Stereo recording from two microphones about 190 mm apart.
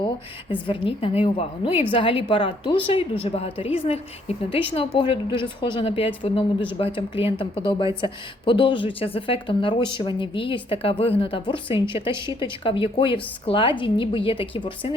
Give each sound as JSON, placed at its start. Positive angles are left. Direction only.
{"t": 0.5, "sound": "speech", "side_deg": 30}